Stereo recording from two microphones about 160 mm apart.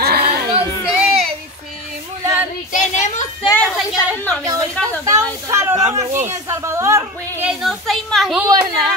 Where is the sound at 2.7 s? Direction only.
50° left (ahead or behind).